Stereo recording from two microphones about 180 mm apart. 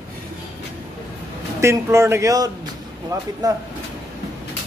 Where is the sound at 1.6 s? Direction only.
15° right (ahead or behind).